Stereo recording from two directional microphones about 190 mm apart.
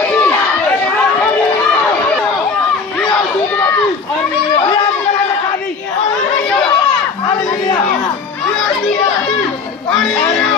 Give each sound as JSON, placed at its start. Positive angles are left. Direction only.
{"t": 0.1, "sound": "chatter", "side_deg": 10}
{"t": 9.8, "sound": "music", "side_deg": 0}